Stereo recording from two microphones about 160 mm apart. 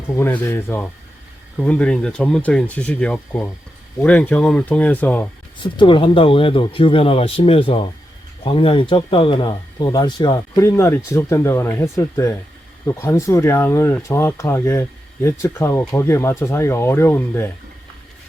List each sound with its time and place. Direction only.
0.1 s speech: 15° left (ahead or behind)
5.6 s speech: 30° left (ahead or behind); by 17.5 s 15° left (ahead or behind)